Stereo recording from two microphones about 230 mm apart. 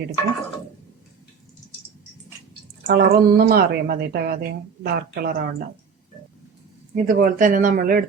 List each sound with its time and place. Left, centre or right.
2.8 s speech: right
6.9 s speech: right